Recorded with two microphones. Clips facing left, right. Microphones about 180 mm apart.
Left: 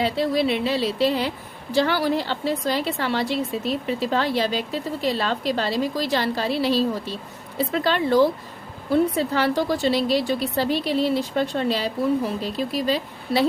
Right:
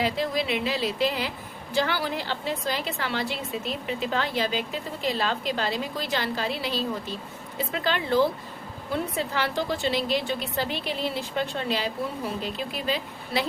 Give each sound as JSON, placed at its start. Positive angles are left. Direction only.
{"t": 0.0, "sound": "a woman's voice", "side_deg": 30}